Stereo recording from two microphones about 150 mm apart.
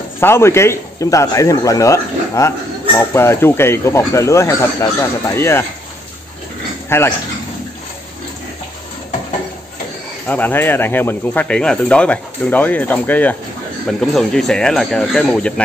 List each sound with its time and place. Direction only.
0.2 s a man's voice: 15° left (ahead or behind)
6.9 s speech: 15° left (ahead or behind)
10.2 s speech: 10° left (ahead or behind)